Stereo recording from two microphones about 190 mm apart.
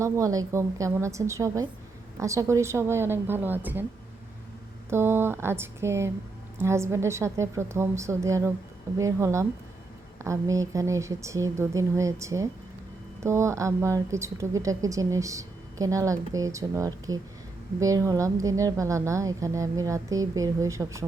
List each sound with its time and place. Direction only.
0.0 s speech: 15° right (ahead or behind)
4.9 s speech: 10° right (ahead or behind)